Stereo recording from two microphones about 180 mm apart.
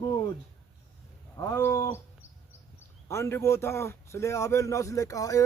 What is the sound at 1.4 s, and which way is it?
Speech, 15° left (ahead or behind).